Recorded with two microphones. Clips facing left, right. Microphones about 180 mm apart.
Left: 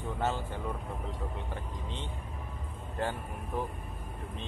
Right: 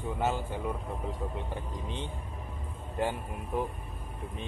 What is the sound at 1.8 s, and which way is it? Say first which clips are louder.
Speech: right 3 dB; 15° right (ahead or behind).